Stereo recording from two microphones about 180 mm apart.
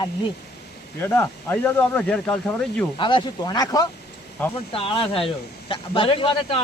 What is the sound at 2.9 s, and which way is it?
Speech, 25° left (ahead or behind).